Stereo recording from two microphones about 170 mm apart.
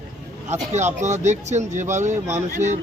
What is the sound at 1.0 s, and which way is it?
Speech, 45° right (ahead or behind).